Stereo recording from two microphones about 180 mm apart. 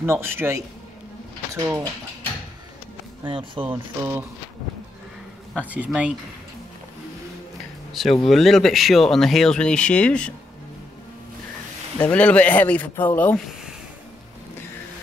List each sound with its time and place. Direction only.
0.0 s a man's voice: 15° right (ahead or behind)
3.3 s speech: 30° right (ahead or behind)
5.7 s a man's voice: 5° right (ahead or behind)
7.9 s speech: centre (ahead or behind)
12.0 s speech: 10° left (ahead or behind)